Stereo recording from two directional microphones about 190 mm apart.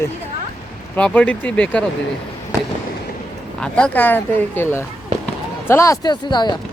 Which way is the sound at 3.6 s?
5° left (ahead or behind).